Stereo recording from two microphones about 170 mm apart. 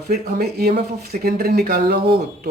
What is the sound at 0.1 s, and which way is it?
Speech, 65° right (ahead or behind).